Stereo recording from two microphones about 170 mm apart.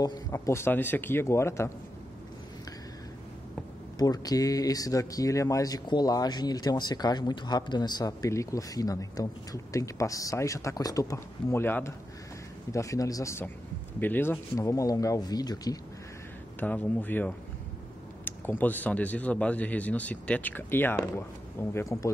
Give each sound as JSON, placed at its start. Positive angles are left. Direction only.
{"t": 0.0, "sound": "speech", "side_deg": 20}
{"t": 4.0, "sound": "speech", "side_deg": 20}
{"t": 16.5, "sound": "speech", "side_deg": 10}